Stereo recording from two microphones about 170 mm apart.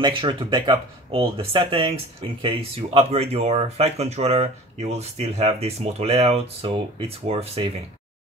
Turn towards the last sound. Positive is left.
turn(degrees=-35)  # may be behind; listen again after turning